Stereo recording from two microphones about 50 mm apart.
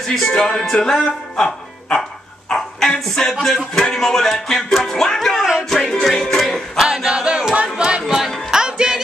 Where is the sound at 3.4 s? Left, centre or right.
Centre.